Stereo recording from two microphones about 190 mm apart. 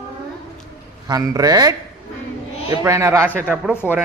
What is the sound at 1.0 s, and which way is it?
A man's voice, 20° right (ahead or behind).